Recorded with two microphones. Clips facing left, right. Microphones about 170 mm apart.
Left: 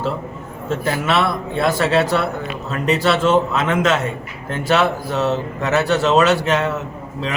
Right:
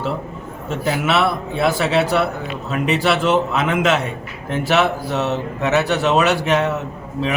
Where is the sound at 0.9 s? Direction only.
5° right (ahead or behind).